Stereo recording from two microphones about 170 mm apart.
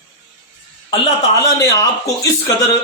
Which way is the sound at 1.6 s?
20° left (ahead or behind).